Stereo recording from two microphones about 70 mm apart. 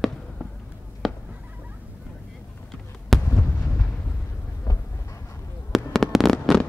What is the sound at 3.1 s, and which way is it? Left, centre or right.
Heart sounds, centre.